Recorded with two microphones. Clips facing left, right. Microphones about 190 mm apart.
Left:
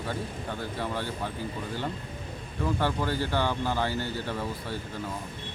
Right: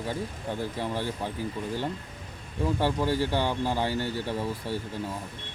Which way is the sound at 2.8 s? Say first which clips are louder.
Right 4 dB; 15° right (ahead or behind).